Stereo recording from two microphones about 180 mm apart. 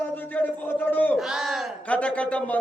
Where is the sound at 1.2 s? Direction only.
Centre (ahead or behind).